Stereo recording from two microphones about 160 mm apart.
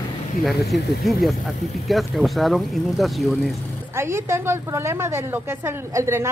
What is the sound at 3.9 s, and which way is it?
A woman's voice, 15° right (ahead or behind).